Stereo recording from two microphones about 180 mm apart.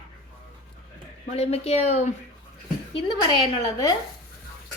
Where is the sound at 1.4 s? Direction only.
35° left (ahead or behind).